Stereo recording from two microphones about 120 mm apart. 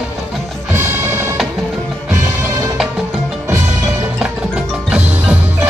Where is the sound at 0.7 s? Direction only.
20° right (ahead or behind).